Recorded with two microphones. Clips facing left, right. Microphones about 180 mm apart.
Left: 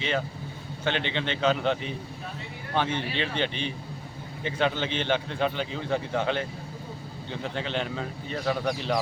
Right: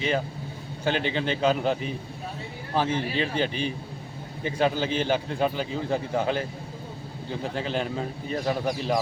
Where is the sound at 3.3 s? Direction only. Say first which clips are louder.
Right 3 dB; 5° right (ahead or behind).